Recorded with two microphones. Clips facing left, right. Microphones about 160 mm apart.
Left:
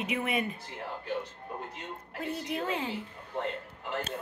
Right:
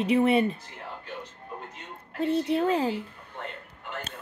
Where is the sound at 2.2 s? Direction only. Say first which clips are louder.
Right 10 dB; 30° right (ahead or behind).